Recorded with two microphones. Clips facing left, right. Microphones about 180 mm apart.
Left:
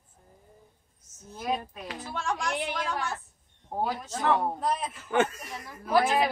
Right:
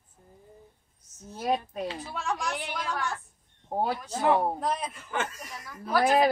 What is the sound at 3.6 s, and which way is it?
Speech, 30° right (ahead or behind).